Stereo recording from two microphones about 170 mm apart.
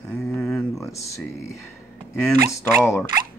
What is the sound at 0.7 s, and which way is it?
Speech, 15° left (ahead or behind).